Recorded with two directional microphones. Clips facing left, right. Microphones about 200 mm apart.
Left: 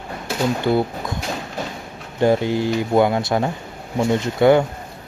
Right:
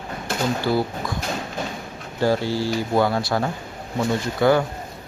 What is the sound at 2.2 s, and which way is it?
Speech, 20° left (ahead or behind).